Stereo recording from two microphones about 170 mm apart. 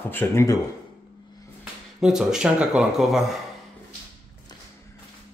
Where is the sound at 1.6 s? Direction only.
5° right (ahead or behind).